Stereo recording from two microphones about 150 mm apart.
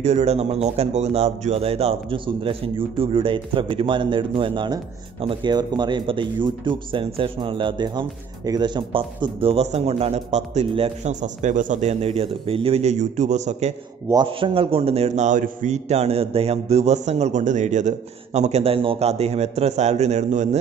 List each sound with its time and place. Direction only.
0.0 s a man's voice: 45° right (ahead or behind)
14.1 s a man's voice: 35° right (ahead or behind); by 20.4 s 50° right (ahead or behind)